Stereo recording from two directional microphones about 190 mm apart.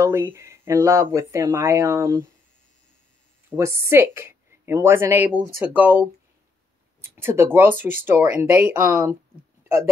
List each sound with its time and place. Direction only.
0.0 s speech: 15° right (ahead or behind)
3.4 s speech: 15° right (ahead or behind)